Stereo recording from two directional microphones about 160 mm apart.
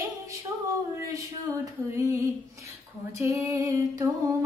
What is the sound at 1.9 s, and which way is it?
Female singing, 20° right (ahead or behind).